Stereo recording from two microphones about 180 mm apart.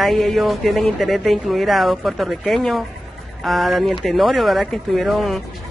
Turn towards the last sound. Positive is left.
turn(degrees=0)  # may be behind; listen again after turning